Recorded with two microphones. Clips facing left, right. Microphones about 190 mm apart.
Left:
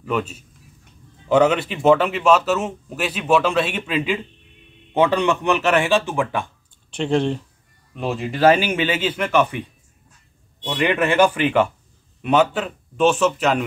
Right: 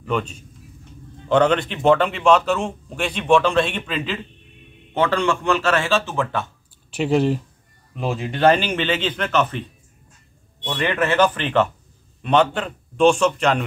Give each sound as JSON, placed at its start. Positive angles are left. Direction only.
{"t": 0.0, "sound": "a man's voice", "side_deg": 5}
{"t": 6.9, "sound": "a man's voice", "side_deg": -5}